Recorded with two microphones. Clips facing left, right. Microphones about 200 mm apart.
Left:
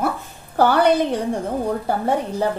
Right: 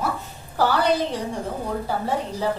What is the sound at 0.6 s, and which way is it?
Speech, 55° left (ahead or behind).